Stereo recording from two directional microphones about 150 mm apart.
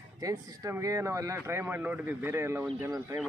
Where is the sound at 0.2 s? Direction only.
20° right (ahead or behind).